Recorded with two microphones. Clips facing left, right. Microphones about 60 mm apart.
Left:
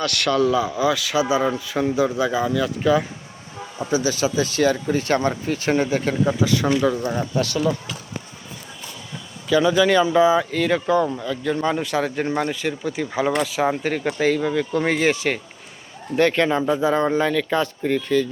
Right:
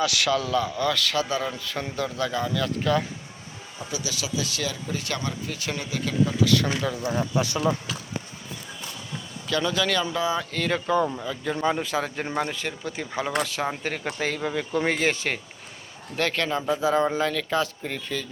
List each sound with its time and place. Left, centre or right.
0.0 s speech: centre
3.8 s speech: left
6.4 s speech: left
6.7 s speech: centre
7.4 s speech: right
9.5 s speech: centre
10.5 s speech: centre
11.2 s speech: centre
16.8 s speech: centre